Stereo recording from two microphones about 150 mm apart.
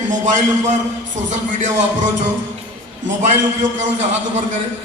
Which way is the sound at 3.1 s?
55° right (ahead or behind).